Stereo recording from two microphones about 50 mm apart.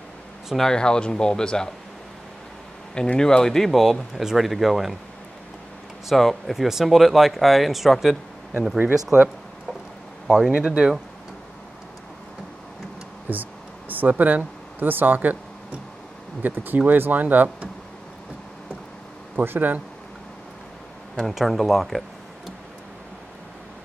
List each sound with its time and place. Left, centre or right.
0.6 s speech: centre
2.9 s speech: centre
3.8 s speech: centre
6.0 s speech: centre
10.2 s speech: centre
13.3 s a sound: right
16.4 s speech: right
19.3 s speech: right
21.3 s speech: centre